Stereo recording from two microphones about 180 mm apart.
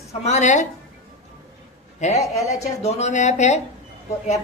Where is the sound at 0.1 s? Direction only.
40° left (ahead or behind).